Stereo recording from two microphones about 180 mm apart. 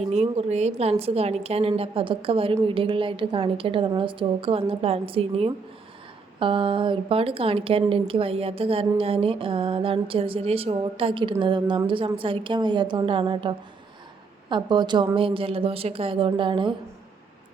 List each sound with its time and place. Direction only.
0.1 s a woman's voice: 35° right (ahead or behind)